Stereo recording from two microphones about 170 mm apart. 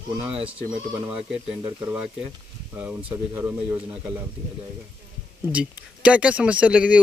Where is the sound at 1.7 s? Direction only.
15° right (ahead or behind).